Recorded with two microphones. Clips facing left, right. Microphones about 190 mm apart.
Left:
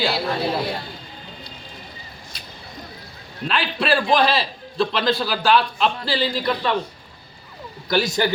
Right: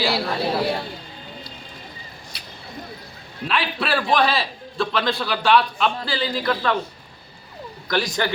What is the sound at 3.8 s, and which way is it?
A man's voice, centre (ahead or behind).